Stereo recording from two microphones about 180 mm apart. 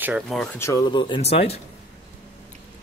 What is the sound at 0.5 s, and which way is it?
Speech, 15° left (ahead or behind).